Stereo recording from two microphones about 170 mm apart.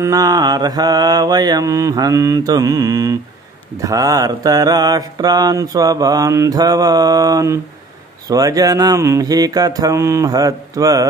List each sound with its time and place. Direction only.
0.0 s mantra: 20° right (ahead or behind)